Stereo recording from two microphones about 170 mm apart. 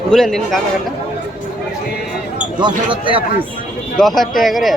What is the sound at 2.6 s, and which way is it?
Speech, 30° right (ahead or behind).